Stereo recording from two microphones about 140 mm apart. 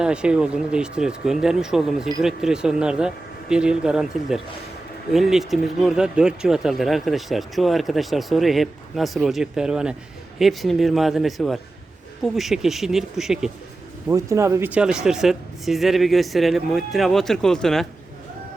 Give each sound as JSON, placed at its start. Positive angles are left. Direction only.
{"t": 0.0, "sound": "speech", "side_deg": -5}
{"t": 14.1, "sound": "speech", "side_deg": -20}